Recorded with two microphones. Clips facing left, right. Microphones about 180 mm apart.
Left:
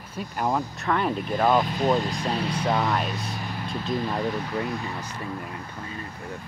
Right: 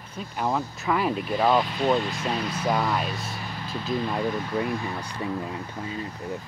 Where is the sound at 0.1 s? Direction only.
5° left (ahead or behind).